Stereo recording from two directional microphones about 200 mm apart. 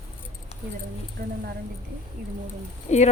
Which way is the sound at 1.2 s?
45° right (ahead or behind).